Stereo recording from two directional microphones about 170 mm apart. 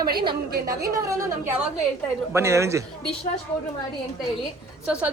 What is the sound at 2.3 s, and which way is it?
Speech, 15° right (ahead or behind).